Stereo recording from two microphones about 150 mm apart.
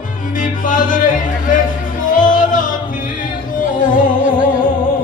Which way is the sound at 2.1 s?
60° left (ahead or behind).